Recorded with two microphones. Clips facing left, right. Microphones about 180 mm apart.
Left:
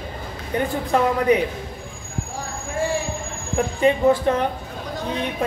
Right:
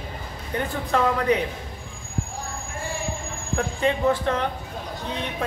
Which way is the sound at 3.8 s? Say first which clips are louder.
Left 5 dB; 10° left (ahead or behind).